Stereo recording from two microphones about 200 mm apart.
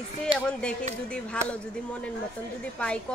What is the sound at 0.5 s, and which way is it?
Speech, 5° left (ahead or behind).